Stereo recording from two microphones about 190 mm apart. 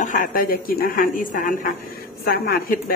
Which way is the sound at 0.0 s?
45° left (ahead or behind).